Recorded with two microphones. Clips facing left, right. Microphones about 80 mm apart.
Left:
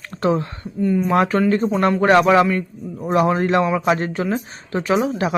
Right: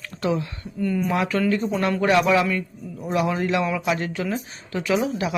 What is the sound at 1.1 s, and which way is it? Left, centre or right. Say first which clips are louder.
Speech: left 6 dB; left.